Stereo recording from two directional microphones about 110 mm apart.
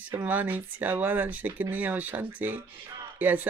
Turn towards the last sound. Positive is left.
turn(degrees=-15)  # may be behind; listen again after turning